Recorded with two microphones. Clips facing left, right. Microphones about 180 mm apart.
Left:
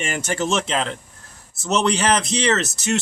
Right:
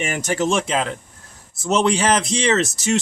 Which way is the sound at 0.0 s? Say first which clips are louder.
Right 3 dB; 15° right (ahead or behind).